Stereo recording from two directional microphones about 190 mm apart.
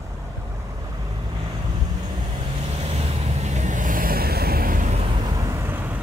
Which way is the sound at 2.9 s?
35° right (ahead or behind).